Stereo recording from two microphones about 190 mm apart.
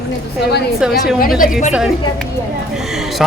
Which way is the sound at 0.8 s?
5° right (ahead or behind).